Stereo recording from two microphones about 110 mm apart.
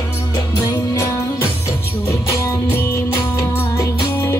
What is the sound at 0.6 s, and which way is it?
Music, 25° left (ahead or behind).